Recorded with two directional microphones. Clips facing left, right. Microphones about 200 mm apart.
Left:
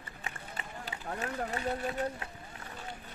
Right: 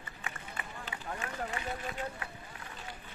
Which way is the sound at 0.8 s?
40° left (ahead or behind).